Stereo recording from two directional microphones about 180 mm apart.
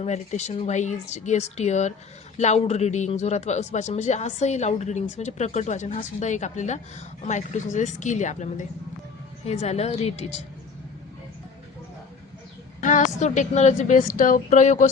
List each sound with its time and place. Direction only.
0.0 s a man's voice: 40° left (ahead or behind)
12.8 s a woman's voice: 45° left (ahead or behind)